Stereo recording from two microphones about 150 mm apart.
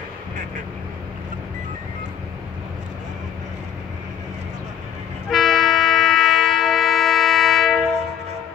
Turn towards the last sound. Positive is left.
turn(degrees=0)  # may be behind; listen again after turning